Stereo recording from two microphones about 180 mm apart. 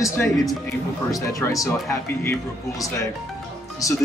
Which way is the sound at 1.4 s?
15° left (ahead or behind).